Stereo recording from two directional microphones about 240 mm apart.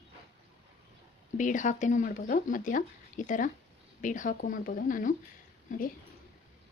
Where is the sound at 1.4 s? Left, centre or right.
Left.